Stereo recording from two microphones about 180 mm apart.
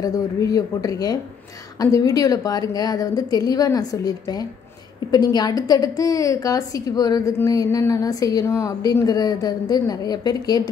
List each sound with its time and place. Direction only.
0.0 s a woman's voice: 20° left (ahead or behind)